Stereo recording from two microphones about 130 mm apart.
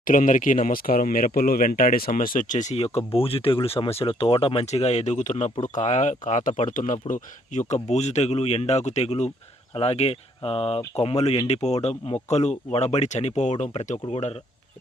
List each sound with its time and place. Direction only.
0.0 s speech: 90° left
7.7 s speech: 60° left (ahead or behind)